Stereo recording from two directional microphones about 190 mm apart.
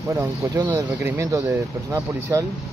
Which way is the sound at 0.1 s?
15° right (ahead or behind).